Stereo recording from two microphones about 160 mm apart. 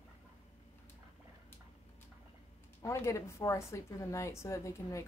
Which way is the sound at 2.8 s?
20° left (ahead or behind).